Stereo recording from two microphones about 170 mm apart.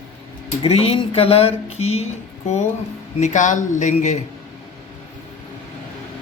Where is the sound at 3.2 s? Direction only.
45° left (ahead or behind).